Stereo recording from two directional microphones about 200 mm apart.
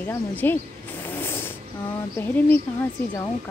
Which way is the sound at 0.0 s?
10° left (ahead or behind).